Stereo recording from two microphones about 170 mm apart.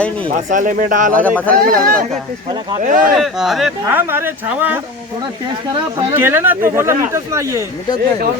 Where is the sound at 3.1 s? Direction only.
Centre (ahead or behind).